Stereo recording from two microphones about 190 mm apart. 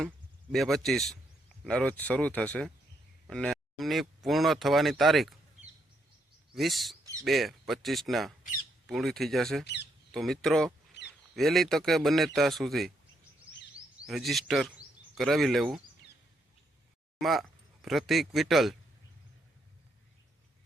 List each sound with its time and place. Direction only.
0.5 s a man's voice: centre (ahead or behind)
6.5 s speech: centre (ahead or behind)
7.0 s bird: 15° right (ahead or behind)
7.3 s a man's voice: centre (ahead or behind)
11.0 s duck: 65° left (ahead or behind)
11.3 s a man's voice: centre (ahead or behind)
14.1 s a man's voice: centre (ahead or behind)
17.2 s a man's voice: centre (ahead or behind)